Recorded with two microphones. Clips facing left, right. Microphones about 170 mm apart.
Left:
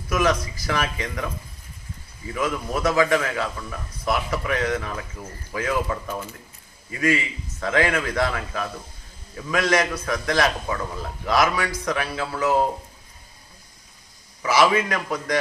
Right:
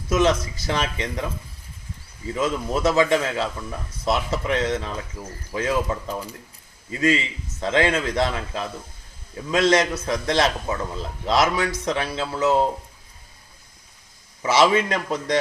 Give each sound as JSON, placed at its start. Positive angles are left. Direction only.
{"t": 0.1, "sound": "a man's voice", "side_deg": -25}
{"t": 2.3, "sound": "a man's voice", "side_deg": -25}
{"t": 14.4, "sound": "a man's voice", "side_deg": -25}